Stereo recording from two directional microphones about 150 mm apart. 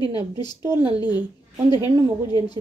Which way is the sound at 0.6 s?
20° right (ahead or behind).